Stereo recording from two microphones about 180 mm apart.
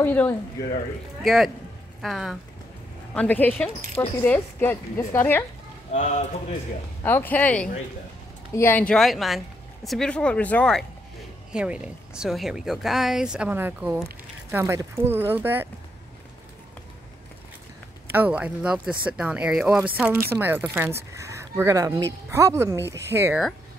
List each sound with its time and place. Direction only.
0.0 s a woman's voice: 10° left (ahead or behind)
1.2 s a woman's voice: centre (ahead or behind)
5.9 s a man's voice: 40° left (ahead or behind)
7.0 s a woman's voice: 15° left (ahead or behind)
11.5 s speech: 5° right (ahead or behind)
18.1 s speech: 10° right (ahead or behind)